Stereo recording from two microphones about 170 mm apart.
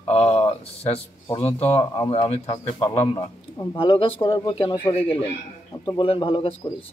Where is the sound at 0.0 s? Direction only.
35° left (ahead or behind).